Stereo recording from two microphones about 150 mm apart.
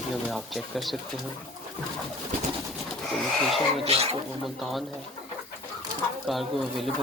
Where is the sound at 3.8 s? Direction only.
45° right (ahead or behind).